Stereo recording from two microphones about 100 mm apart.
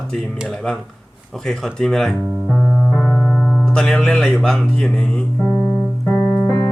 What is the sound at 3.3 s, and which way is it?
Music, 10° left (ahead or behind).